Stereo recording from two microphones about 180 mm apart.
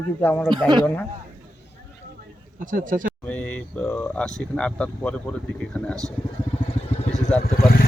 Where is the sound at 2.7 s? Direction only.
50° right (ahead or behind).